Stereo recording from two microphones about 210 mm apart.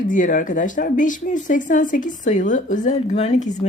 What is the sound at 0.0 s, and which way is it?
Speech, 40° left (ahead or behind).